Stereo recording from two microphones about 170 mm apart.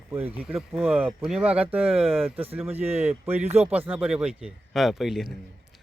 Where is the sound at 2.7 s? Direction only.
35° right (ahead or behind).